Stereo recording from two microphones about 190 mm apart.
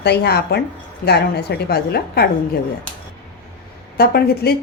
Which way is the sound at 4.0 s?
55° left (ahead or behind).